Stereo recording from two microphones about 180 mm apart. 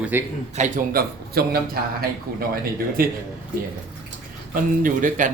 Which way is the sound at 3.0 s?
55° right (ahead or behind).